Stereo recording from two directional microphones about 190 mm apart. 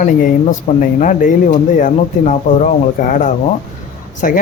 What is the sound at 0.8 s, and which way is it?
Speech, 45° left (ahead or behind).